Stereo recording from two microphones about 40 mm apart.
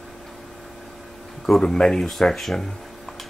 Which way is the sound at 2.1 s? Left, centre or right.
Centre.